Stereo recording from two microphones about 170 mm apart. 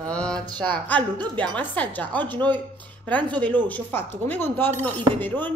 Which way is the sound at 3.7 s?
10° left (ahead or behind).